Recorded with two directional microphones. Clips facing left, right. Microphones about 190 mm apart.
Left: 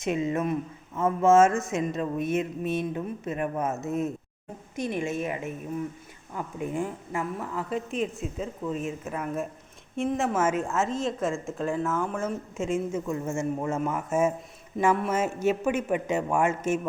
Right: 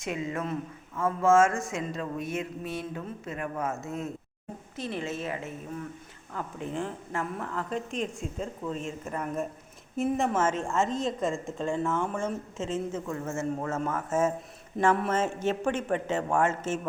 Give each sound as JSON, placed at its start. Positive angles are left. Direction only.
{"t": 0.0, "sound": "a woman's voice", "side_deg": 20}